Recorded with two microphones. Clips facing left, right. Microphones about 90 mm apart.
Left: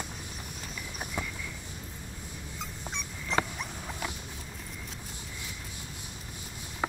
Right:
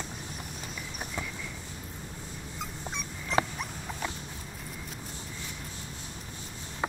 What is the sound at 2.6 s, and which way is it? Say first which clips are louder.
Dog: right 2 dB; 5° right (ahead or behind).